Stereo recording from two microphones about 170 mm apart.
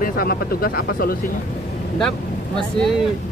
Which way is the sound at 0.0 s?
60° left (ahead or behind).